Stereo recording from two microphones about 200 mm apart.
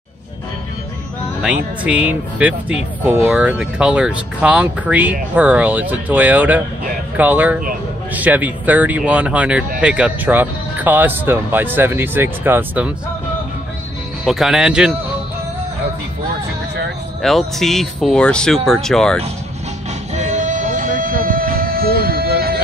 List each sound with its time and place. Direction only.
1.4 s speech: 5° right (ahead or behind)
14.2 s speech: centre (ahead or behind)
17.2 s speech: centre (ahead or behind)
20.2 s music: 35° right (ahead or behind)